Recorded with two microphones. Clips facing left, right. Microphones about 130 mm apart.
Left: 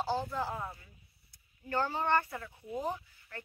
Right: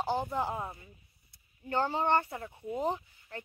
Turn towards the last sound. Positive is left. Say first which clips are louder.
# right 3 dB
turn(degrees=-20)  # may be behind; listen again after turning